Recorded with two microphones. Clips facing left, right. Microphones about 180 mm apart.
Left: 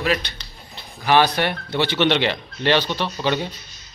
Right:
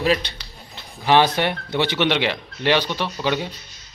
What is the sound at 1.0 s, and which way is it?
Speech, 20° right (ahead or behind).